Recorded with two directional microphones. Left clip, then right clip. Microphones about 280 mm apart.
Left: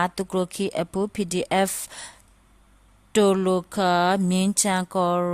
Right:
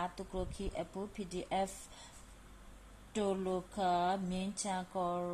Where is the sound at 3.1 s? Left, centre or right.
Left.